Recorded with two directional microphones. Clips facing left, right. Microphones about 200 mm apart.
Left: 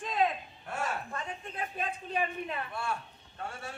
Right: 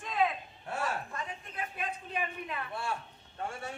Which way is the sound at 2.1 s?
30° left (ahead or behind).